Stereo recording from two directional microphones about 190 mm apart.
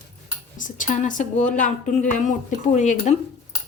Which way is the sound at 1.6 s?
40° left (ahead or behind).